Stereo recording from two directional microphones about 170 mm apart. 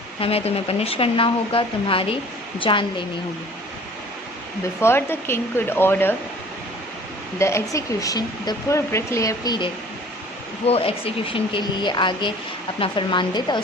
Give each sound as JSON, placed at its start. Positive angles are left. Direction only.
{"t": 0.2, "sound": "speech", "side_deg": 35}
{"t": 4.8, "sound": "speech", "side_deg": 15}
{"t": 7.3, "sound": "speech", "side_deg": 15}
{"t": 10.7, "sound": "speech", "side_deg": 35}